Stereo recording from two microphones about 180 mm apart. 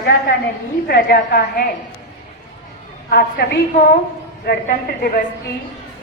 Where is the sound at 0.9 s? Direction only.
60° left (ahead or behind).